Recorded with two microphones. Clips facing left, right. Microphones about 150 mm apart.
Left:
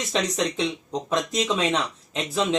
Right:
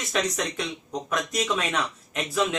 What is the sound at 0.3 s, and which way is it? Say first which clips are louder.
Speech: left 5 dB; 25° left (ahead or behind).